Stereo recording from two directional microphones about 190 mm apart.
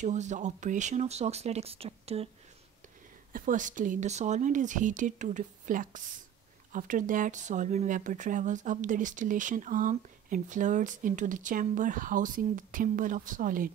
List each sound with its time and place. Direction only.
0.0 s speech: 40° right (ahead or behind)
3.3 s speech: 45° right (ahead or behind)